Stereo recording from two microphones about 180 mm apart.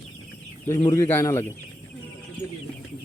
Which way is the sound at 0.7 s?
20° left (ahead or behind).